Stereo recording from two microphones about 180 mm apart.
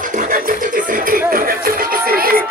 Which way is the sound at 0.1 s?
45° right (ahead or behind).